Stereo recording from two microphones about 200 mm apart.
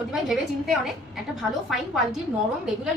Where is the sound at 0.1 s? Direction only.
Centre (ahead or behind).